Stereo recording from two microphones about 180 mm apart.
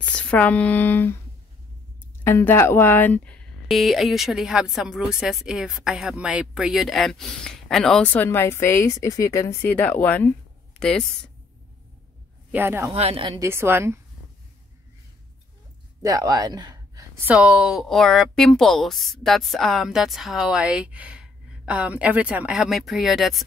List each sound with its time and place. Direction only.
0.0 s speech: 5° left (ahead or behind)
2.2 s speech: 15° left (ahead or behind)
12.4 s speech: 10° right (ahead or behind)
12.9 s a woman's voice: 30° right (ahead or behind)
13.4 s a woman's voice: 15° right (ahead or behind)
16.0 s speech: 20° right (ahead or behind)
17.2 s speech: 10° right (ahead or behind)